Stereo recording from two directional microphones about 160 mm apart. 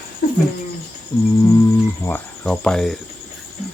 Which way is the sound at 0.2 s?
90° left.